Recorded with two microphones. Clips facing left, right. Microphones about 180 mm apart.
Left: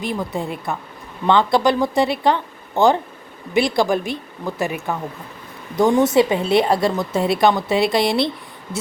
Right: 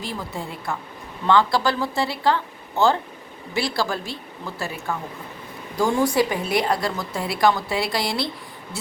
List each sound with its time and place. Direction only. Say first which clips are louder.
0.0 s a woman's voice: left 7 dB; 20° left (ahead or behind)